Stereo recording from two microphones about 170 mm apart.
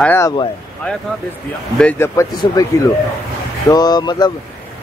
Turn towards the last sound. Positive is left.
turn(degrees=25)  # may be behind; listen again after turning